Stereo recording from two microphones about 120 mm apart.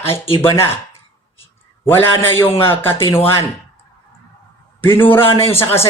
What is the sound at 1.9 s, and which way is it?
A woman's voice, 20° left (ahead or behind).